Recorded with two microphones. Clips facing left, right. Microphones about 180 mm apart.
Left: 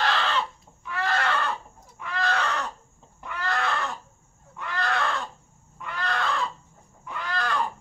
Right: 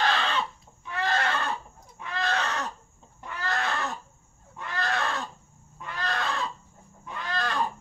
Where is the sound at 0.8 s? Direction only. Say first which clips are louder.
Left 1 dB; 20° right (ahead or behind).